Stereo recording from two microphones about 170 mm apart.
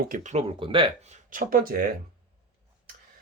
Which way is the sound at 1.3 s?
55° right (ahead or behind).